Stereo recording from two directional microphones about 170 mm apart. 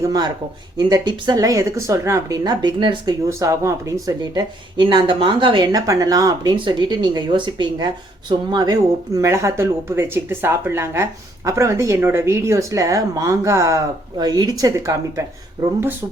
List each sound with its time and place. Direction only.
0.0 s speech: 20° right (ahead or behind)